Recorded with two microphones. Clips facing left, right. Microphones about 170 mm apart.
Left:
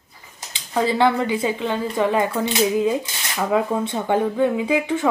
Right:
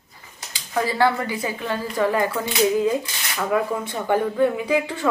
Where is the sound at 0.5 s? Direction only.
20° left (ahead or behind).